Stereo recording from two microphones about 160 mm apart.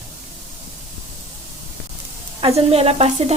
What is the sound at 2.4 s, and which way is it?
Sizzle, 40° right (ahead or behind).